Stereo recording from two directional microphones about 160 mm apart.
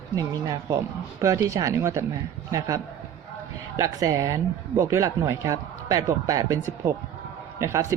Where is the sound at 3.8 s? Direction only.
20° right (ahead or behind).